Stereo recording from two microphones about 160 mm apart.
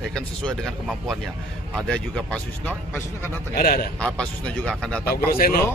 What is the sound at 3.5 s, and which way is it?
Speech, 65° left (ahead or behind).